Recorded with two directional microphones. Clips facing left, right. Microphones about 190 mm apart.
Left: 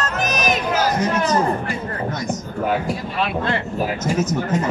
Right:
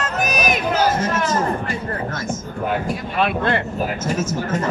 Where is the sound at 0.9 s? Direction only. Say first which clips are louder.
Left 2 dB; 15° left (ahead or behind).